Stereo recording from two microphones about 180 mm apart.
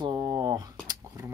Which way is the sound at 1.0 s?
20° right (ahead or behind).